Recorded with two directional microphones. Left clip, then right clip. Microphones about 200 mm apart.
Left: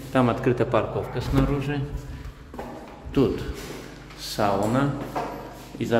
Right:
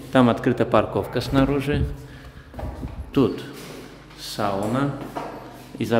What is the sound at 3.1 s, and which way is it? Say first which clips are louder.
Speech: right 2 dB; 20° right (ahead or behind).